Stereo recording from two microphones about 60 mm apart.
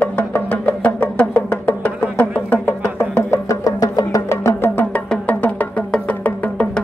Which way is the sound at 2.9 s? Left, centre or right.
Left.